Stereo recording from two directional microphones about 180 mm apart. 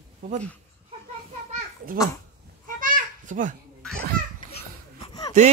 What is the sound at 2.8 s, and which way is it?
Children playing, 45° right (ahead or behind).